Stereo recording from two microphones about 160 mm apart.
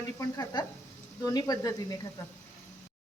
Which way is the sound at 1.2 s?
25° left (ahead or behind).